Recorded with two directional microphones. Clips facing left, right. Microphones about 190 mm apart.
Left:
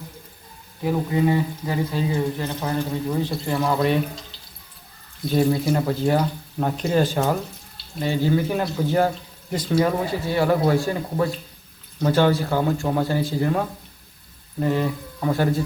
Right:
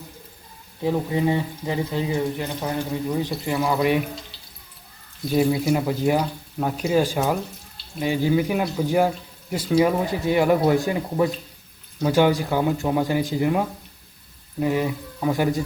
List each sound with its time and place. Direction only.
0.8 s speech: 25° right (ahead or behind)
5.3 s speech: 10° right (ahead or behind)